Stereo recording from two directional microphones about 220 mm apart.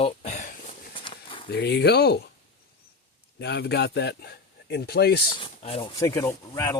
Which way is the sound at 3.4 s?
50° left (ahead or behind).